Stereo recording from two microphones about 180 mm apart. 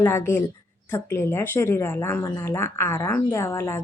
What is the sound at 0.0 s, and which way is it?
Speech, 15° left (ahead or behind).